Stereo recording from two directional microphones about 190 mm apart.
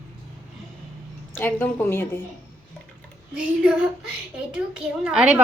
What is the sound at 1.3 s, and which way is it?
Speech, 10° left (ahead or behind).